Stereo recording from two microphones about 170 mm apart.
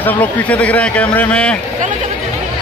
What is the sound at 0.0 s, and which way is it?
A man's voice, 10° left (ahead or behind).